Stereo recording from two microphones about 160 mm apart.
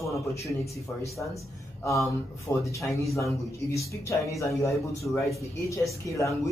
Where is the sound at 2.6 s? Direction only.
20° left (ahead or behind).